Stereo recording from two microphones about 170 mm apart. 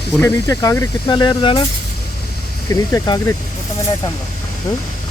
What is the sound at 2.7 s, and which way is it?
Speech, 20° left (ahead or behind).